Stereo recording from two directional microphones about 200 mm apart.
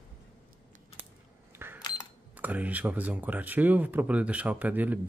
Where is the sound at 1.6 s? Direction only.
10° right (ahead or behind).